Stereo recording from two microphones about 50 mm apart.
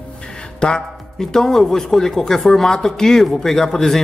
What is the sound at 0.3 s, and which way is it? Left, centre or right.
Music, centre.